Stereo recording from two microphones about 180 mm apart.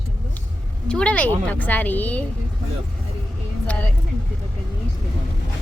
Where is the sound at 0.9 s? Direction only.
5° left (ahead or behind).